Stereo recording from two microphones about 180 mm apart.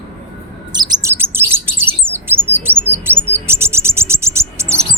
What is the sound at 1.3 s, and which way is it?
Bird, 10° right (ahead or behind).